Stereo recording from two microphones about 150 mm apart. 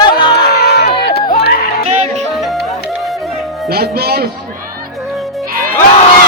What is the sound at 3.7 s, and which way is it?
Music, 90° right.